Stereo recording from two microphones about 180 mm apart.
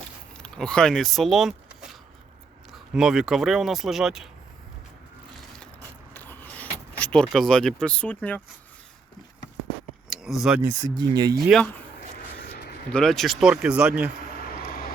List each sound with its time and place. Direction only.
0.3 s speech: 5° left (ahead or behind)
6.1 s keys jangling: 10° left (ahead or behind)
10.1 s a sound: centre (ahead or behind)
10.6 s speech: 20° right (ahead or behind)
12.9 s speech: 5° left (ahead or behind)
14.5 s vehicle: 55° left (ahead or behind)